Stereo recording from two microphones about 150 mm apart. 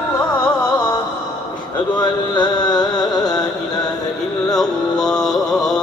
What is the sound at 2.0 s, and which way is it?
Carnatic music, 30° left (ahead or behind).